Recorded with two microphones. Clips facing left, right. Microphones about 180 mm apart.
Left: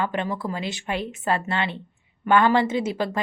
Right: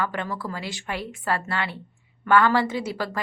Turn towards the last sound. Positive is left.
turn(degrees=20)  # may be behind; listen again after turning